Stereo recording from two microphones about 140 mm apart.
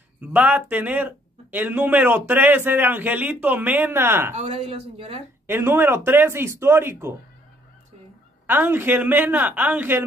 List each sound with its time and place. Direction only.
0.3 s speech: 10° right (ahead or behind)
4.4 s speech: 40° right (ahead or behind)
5.5 s speech: 15° right (ahead or behind)
8.5 s speech: 15° right (ahead or behind)